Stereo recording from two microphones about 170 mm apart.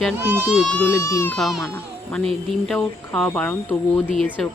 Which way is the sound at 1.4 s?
Centre (ahead or behind).